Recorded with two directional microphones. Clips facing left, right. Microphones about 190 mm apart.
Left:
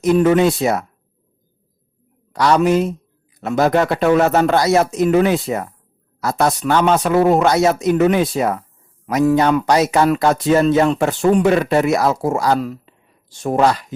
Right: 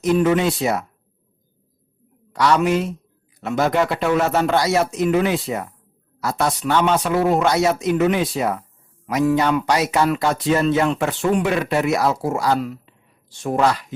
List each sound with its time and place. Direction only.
0.0 s speech: 45° left (ahead or behind)
2.3 s speech: 35° left (ahead or behind)